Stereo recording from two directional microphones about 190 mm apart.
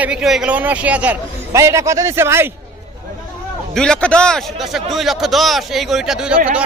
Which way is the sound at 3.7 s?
5° left (ahead or behind).